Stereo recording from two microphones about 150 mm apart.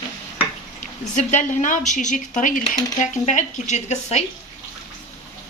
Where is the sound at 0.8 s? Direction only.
55° left (ahead or behind).